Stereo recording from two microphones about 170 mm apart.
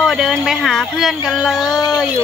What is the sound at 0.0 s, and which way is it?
Speech, centre (ahead or behind).